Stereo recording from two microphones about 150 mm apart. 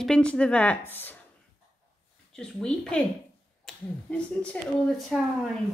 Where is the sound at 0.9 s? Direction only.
15° left (ahead or behind).